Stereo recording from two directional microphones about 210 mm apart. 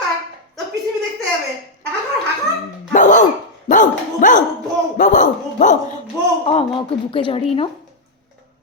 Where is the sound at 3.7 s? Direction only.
40° left (ahead or behind).